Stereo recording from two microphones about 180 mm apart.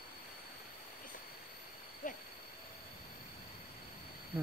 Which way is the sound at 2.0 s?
45° left (ahead or behind).